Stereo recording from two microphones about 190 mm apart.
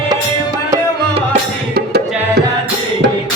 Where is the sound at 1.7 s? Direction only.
55° right (ahead or behind).